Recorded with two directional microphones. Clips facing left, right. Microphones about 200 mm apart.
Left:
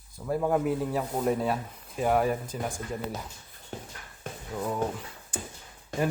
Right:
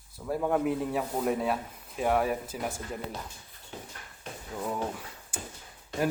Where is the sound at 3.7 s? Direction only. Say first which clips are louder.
Left 3 dB; 50° left (ahead or behind).